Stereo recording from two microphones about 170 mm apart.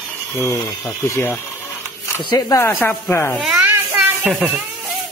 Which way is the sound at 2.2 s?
25° left (ahead or behind).